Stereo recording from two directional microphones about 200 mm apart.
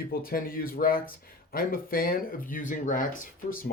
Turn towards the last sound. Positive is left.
turn(degrees=45)  # may be behind; listen again after turning